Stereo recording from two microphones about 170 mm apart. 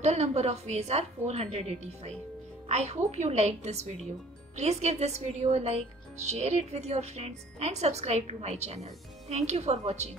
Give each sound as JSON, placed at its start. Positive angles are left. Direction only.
{"t": 0.0, "sound": "a woman's voice", "side_deg": -40}